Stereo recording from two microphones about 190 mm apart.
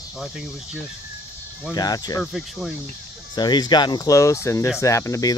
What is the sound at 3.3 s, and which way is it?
Speech, 20° left (ahead or behind).